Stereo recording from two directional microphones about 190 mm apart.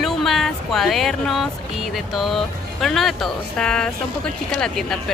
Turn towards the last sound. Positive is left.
turn(degrees=5)  # may be behind; listen again after turning